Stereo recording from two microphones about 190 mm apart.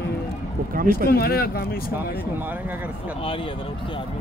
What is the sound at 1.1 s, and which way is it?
Speech, 55° left (ahead or behind).